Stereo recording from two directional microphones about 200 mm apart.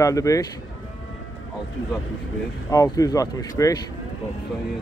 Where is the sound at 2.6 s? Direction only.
15° left (ahead or behind).